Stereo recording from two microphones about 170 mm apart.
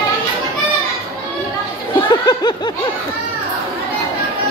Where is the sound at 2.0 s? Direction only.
25° left (ahead or behind).